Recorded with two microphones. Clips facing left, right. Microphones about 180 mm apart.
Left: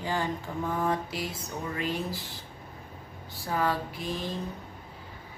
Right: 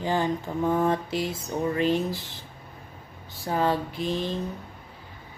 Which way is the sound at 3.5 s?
25° right (ahead or behind).